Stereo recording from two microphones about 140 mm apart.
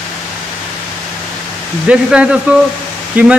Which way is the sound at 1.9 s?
10° right (ahead or behind).